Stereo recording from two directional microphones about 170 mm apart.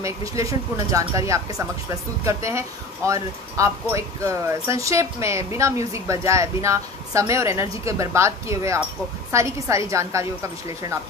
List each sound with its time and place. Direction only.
0.0 s speech: 20° right (ahead or behind)